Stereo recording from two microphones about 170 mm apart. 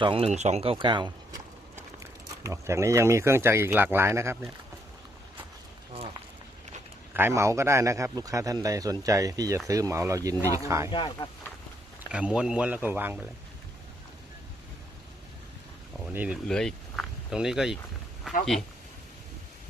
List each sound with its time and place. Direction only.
0.0 s speech: 35° right (ahead or behind)
2.4 s speech: 15° right (ahead or behind)
5.9 s a sound: 35° right (ahead or behind)
7.1 s a man's voice: 15° right (ahead or behind)
12.1 s speech: 5° right (ahead or behind)
16.1 s speech: 10° right (ahead or behind)
16.5 s speech: 5° left (ahead or behind)